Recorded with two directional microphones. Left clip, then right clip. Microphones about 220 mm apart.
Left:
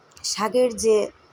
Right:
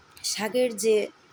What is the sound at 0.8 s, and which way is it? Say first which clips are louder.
Speech: left 2 dB; centre (ahead or behind).